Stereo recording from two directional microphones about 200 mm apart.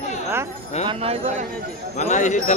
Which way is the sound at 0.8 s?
30° right (ahead or behind).